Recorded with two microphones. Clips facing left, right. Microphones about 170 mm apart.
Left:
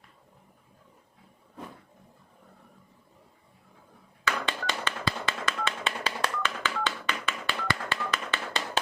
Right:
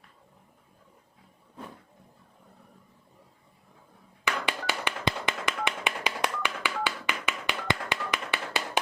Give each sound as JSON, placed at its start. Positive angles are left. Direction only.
{"t": 4.2, "sound": "tap", "side_deg": -15}